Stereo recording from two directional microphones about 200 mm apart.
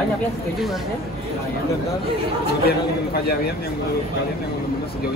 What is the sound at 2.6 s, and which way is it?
Speech, 50° left (ahead or behind).